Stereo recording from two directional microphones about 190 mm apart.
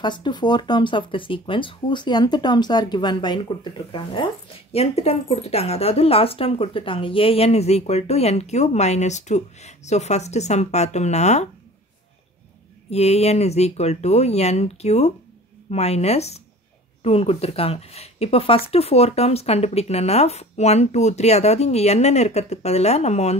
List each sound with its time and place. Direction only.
0.0 s speech: 25° left (ahead or behind)
12.9 s speech: 35° left (ahead or behind)